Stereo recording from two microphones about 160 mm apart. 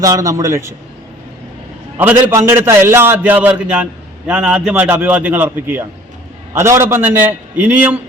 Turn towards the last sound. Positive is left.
turn(degrees=-10)  # may be behind; listen again after turning